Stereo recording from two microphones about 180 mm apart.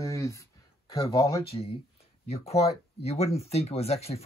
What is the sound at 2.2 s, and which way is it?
Speech, 35° left (ahead or behind).